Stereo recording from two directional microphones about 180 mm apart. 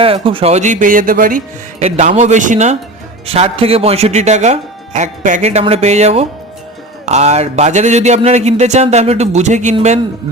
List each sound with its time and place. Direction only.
0.0 s speech: 30° right (ahead or behind); by 1.4 s 50° right (ahead or behind)
1.8 s a man's voice: 40° right (ahead or behind)